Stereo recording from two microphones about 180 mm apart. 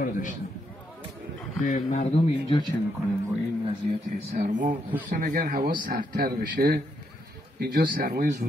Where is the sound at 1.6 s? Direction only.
45° left (ahead or behind).